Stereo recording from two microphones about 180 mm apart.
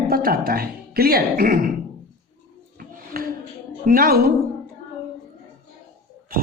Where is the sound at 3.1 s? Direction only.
60° right (ahead or behind).